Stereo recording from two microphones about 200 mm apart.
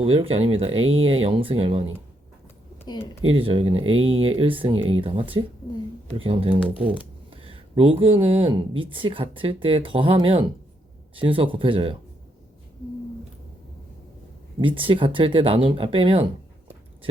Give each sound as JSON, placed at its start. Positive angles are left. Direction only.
{"t": 0.0, "sound": "speech", "side_deg": -30}
{"t": 2.8, "sound": "speech", "side_deg": 20}
{"t": 3.3, "sound": "speech", "side_deg": -25}
{"t": 6.7, "sound": "speech", "side_deg": -5}
{"t": 7.3, "sound": "a sound", "side_deg": -25}
{"t": 8.0, "sound": "speech", "side_deg": -25}
{"t": 14.6, "sound": "speech", "side_deg": -25}